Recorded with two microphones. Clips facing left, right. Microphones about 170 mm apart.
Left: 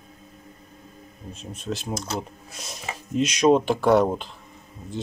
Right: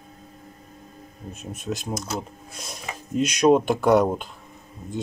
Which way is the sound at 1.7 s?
5° right (ahead or behind).